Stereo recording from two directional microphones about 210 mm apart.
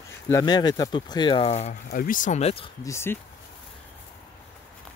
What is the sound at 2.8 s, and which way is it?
Speech, 10° left (ahead or behind).